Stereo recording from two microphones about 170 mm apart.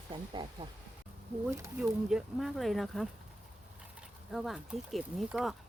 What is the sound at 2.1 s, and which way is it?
Speech, centre (ahead or behind).